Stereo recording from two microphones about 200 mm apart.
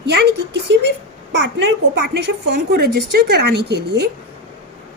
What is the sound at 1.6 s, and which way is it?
Speech, 60° right (ahead or behind).